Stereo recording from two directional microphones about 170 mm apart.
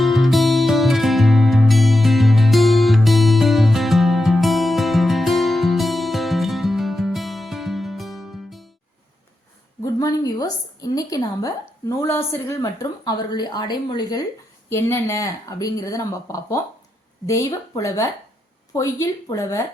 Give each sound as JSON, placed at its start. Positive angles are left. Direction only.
{"t": 0.0, "sound": "music", "side_deg": 0}
{"t": 9.8, "sound": "a woman's voice", "side_deg": 20}